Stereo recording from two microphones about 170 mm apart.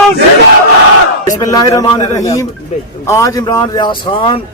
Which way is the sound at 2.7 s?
45° left (ahead or behind).